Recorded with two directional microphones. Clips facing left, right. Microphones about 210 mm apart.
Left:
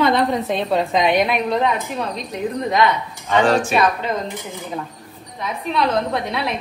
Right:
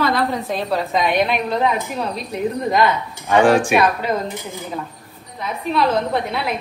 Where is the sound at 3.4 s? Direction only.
15° right (ahead or behind).